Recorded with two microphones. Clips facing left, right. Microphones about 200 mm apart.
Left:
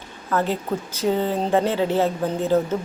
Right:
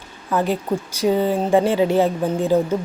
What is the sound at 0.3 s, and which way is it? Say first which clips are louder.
Speech: right 2 dB; 15° right (ahead or behind).